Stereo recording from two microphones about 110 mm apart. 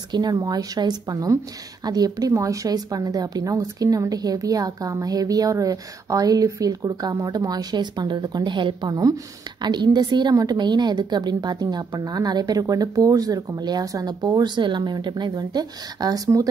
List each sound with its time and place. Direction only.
0.1 s a woman's voice: 40° right (ahead or behind)